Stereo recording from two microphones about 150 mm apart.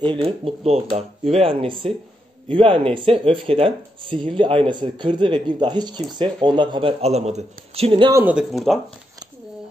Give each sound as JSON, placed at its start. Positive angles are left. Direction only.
{"t": 0.0, "sound": "speech", "side_deg": -35}
{"t": 8.1, "sound": "speech", "side_deg": -10}